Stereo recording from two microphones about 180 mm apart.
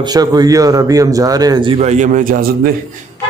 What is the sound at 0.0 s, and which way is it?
A man's voice, 20° right (ahead or behind).